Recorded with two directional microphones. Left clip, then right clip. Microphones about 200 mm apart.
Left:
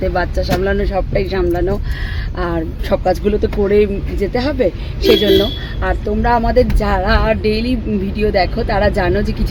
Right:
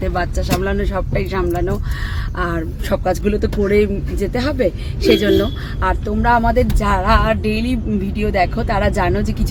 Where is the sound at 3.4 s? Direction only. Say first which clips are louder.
Left 2 dB; 15° right (ahead or behind).